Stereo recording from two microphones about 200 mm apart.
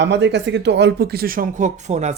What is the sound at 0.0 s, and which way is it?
Speech, 60° right (ahead or behind).